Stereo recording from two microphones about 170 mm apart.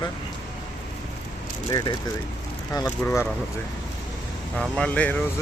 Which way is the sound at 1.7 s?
25° left (ahead or behind).